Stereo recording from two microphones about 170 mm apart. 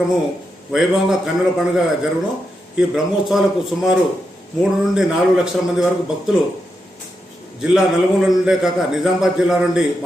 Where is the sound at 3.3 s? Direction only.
Centre (ahead or behind).